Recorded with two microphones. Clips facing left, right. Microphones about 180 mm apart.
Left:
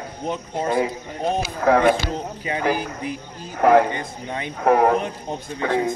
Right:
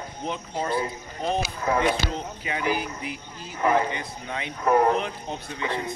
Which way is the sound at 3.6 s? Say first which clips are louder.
Left 7 dB; 75° left (ahead or behind).